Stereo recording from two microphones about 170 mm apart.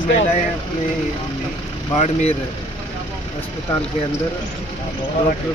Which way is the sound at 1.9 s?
40° left (ahead or behind).